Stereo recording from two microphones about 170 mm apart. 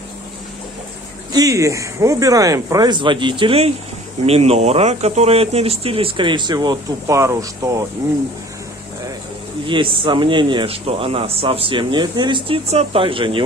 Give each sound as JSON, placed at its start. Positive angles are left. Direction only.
{"t": 1.3, "sound": "speech", "side_deg": -20}
{"t": 9.7, "sound": "speech", "side_deg": -30}